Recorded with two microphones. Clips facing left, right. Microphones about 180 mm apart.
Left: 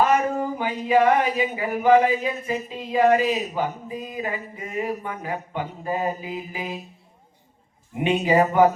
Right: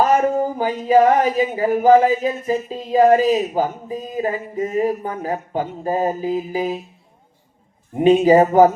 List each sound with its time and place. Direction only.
0.0 s speech: 40° right (ahead or behind)
7.9 s speech: 40° right (ahead or behind)